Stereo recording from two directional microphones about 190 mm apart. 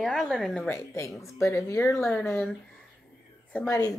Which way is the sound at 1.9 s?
5° left (ahead or behind).